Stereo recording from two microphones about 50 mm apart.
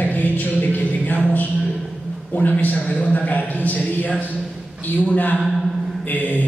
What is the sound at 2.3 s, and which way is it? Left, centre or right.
A man's voice, left.